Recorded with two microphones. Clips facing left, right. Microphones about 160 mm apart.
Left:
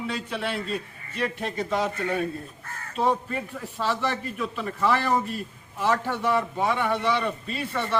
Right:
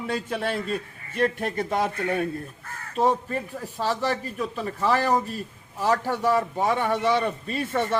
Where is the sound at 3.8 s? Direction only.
40° right (ahead or behind).